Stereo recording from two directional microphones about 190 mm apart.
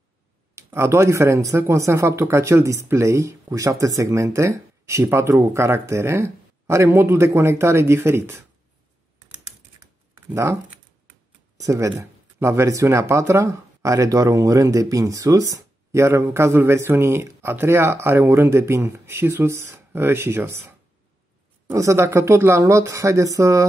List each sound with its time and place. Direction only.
0.6 s speech: 15° right (ahead or behind)
10.3 s speech: 15° right (ahead or behind)